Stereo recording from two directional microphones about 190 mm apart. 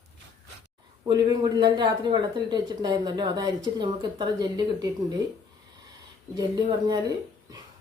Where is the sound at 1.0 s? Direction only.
20° right (ahead or behind).